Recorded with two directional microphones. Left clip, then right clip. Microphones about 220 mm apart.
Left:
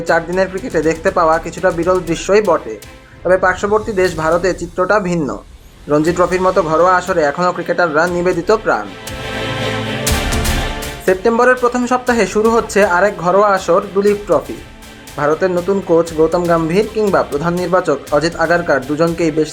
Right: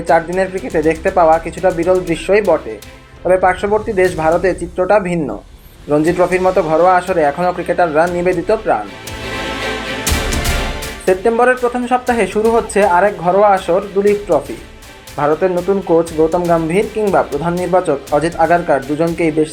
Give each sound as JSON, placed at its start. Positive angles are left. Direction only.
{"t": 0.7, "sound": "speech", "side_deg": 15}
{"t": 11.0, "sound": "speech", "side_deg": 15}